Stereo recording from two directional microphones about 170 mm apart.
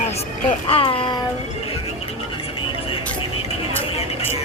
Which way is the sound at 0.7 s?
30° left (ahead or behind).